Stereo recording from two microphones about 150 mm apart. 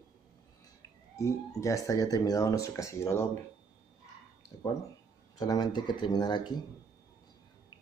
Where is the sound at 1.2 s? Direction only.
20° left (ahead or behind).